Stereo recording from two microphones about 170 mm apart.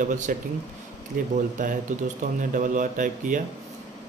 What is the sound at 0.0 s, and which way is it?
A man's voice, 50° right (ahead or behind).